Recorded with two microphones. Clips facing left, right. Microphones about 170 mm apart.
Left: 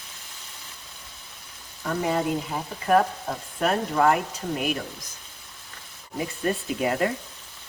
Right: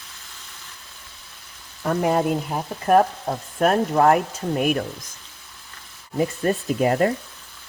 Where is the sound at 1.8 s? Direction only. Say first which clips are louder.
Right 5 dB; 55° right (ahead or behind).